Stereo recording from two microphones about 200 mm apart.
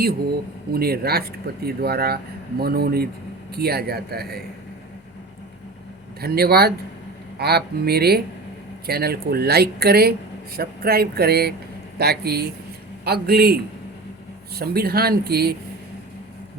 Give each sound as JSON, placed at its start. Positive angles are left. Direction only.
{"t": 0.7, "sound": "speech", "side_deg": -50}
{"t": 6.1, "sound": "speech", "side_deg": -50}